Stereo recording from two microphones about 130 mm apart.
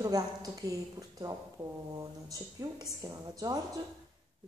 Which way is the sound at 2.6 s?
25° right (ahead or behind).